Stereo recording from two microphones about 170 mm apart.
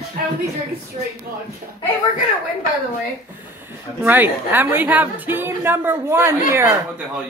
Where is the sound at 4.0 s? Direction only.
10° right (ahead or behind).